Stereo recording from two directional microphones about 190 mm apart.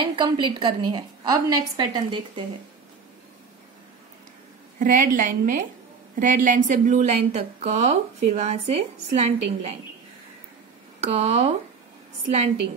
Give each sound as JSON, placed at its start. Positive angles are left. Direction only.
{"t": 0.0, "sound": "a woman's voice", "side_deg": -25}
{"t": 4.7, "sound": "a woman's voice", "side_deg": -45}
{"t": 11.0, "sound": "a woman's voice", "side_deg": -35}